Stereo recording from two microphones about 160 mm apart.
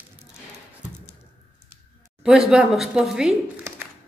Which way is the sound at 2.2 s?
5° right (ahead or behind).